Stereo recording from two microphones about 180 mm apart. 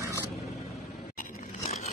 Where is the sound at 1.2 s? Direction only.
45° left (ahead or behind).